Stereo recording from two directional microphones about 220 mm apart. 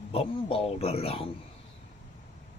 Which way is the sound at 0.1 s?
25° left (ahead or behind).